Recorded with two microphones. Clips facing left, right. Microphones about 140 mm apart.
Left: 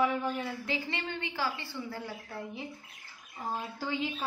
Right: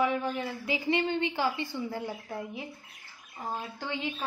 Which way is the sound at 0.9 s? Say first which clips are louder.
Right 9 dB; 20° right (ahead or behind).